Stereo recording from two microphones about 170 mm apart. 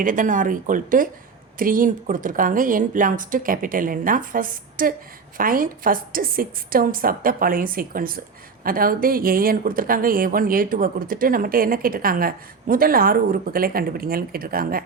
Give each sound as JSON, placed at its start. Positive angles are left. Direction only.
{"t": 0.0, "sound": "speech", "side_deg": -50}